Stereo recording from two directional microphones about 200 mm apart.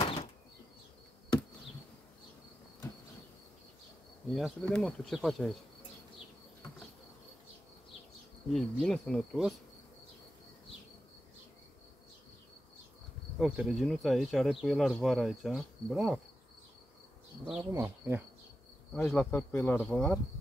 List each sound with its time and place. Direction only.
0.0 s bird flight: 25° left (ahead or behind)
4.3 s speech: centre (ahead or behind)
8.5 s speech: centre (ahead or behind)
13.4 s speech: centre (ahead or behind)
17.5 s speech: 10° right (ahead or behind)
18.9 s speech: 5° left (ahead or behind)